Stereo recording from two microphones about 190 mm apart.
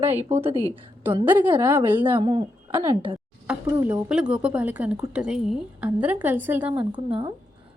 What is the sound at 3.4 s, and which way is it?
A woman's voice, 10° right (ahead or behind).